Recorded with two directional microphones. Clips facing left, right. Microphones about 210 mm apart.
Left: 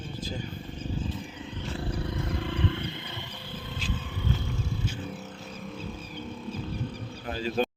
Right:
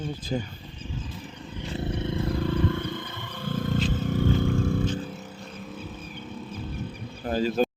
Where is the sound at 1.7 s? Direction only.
25° right (ahead or behind); by 3.8 s 45° right (ahead or behind).